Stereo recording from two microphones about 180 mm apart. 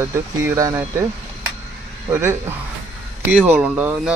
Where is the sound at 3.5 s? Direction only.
10° right (ahead or behind).